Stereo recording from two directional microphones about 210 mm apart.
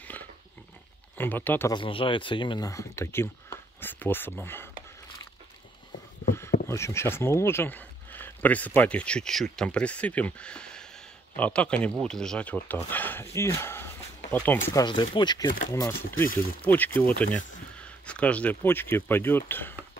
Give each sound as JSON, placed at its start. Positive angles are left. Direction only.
{"t": 1.1, "sound": "speech", "side_deg": 10}
{"t": 1.7, "sound": "speech", "side_deg": 25}
{"t": 6.7, "sound": "speech", "side_deg": 15}